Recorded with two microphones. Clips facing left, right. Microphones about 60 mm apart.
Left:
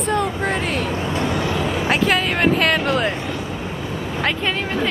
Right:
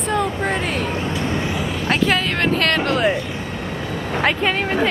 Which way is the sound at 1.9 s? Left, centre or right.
Centre.